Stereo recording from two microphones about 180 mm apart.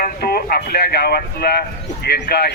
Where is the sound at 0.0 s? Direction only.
60° left (ahead or behind).